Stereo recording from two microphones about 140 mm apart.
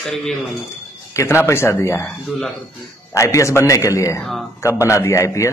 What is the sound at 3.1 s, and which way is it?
A man's voice, 20° left (ahead or behind).